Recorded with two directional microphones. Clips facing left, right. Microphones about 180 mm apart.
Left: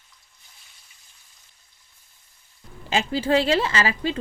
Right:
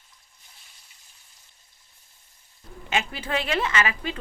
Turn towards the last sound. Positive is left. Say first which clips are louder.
# left 3 dB
turn(degrees=30)  # may be behind; listen again after turning